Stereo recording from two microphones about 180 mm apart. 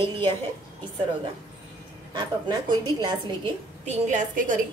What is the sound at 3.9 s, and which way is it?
Speech, 45° right (ahead or behind).